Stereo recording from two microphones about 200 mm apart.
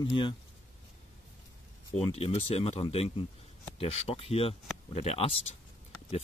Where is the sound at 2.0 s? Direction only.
30° left (ahead or behind).